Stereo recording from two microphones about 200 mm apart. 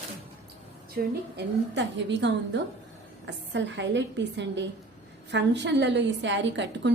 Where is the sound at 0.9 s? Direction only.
60° right (ahead or behind).